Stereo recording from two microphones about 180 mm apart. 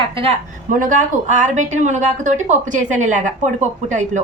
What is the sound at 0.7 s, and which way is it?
A woman's voice, 45° right (ahead or behind).